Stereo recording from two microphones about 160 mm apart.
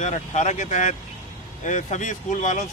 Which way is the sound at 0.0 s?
45° left (ahead or behind).